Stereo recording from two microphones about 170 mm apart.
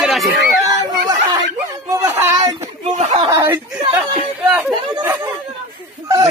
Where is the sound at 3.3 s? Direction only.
15° right (ahead or behind).